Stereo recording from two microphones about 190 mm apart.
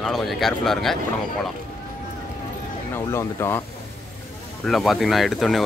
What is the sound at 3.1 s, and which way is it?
Speech, 15° left (ahead or behind).